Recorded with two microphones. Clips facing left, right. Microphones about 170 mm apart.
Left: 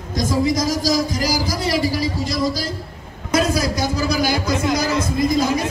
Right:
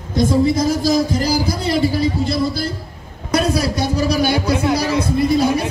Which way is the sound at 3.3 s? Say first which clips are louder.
Right 1 dB; 70° right (ahead or behind).